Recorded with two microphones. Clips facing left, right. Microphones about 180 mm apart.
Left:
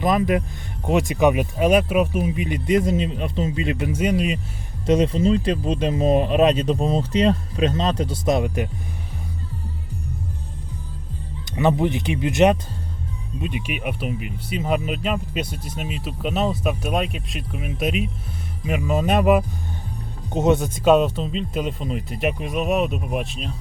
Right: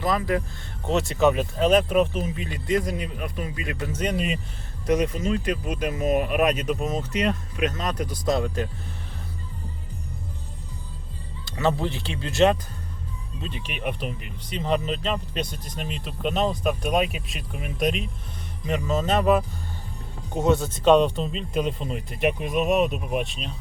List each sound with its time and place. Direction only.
0.0 s speech: 20° left (ahead or behind); by 4.4 s centre (ahead or behind)
4.9 s speech: 30° left (ahead or behind)
11.4 s speech: 15° left (ahead or behind); by 23.6 s centre (ahead or behind)